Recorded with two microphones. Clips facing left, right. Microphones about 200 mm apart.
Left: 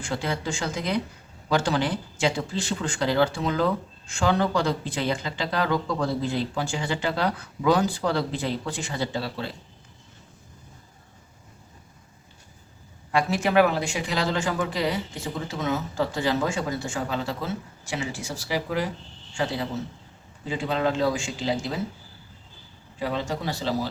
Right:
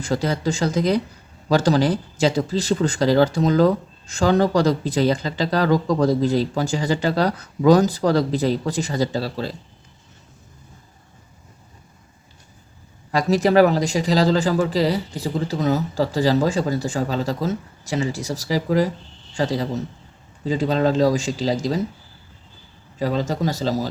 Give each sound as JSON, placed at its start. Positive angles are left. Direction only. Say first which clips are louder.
{"t": 0.0, "sound": "speech", "louder": "right 7 dB", "side_deg": -40}
{"t": 13.1, "sound": "speech", "louder": "right 6 dB", "side_deg": -40}
{"t": 23.0, "sound": "speech", "louder": "right 6 dB", "side_deg": -40}